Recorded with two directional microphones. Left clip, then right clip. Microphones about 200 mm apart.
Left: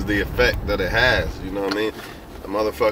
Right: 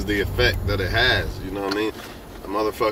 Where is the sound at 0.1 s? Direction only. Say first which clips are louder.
Left 2 dB; 20° left (ahead or behind).